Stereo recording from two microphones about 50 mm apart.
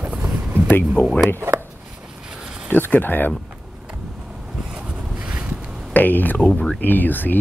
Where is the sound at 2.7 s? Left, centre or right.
Left.